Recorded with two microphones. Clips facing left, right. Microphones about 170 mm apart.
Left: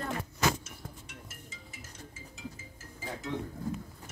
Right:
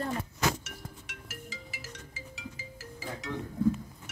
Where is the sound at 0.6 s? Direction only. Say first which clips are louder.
Right 1 dB; 80° right.